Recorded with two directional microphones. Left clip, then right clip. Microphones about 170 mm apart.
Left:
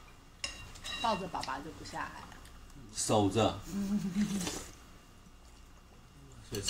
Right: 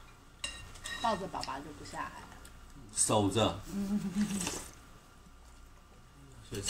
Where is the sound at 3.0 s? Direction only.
30° right (ahead or behind).